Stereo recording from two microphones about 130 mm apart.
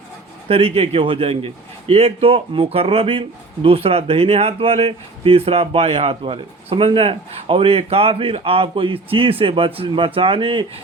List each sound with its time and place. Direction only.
0.4 s a man's voice: 50° right (ahead or behind)